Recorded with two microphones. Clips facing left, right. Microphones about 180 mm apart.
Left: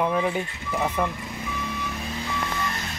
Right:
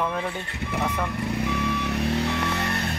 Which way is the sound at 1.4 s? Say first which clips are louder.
Right 4 dB; 70° right (ahead or behind).